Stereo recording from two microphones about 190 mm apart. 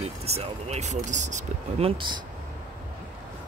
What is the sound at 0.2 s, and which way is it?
Speech, 35° right (ahead or behind).